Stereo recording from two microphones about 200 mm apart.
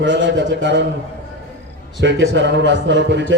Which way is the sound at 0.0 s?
65° right (ahead or behind).